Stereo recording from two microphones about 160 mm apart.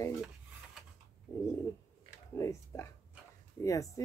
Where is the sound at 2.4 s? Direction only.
20° left (ahead or behind).